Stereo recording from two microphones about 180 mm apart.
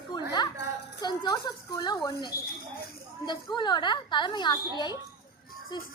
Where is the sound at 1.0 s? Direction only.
25° left (ahead or behind).